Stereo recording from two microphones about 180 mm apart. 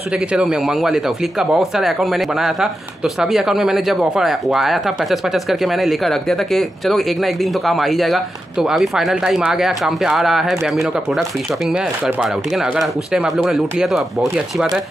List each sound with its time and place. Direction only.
0.3 s speech: 5° right (ahead or behind)